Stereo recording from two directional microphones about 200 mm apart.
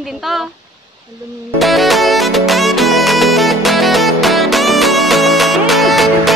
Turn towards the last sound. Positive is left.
turn(degrees=0)  # may be behind; listen again after turning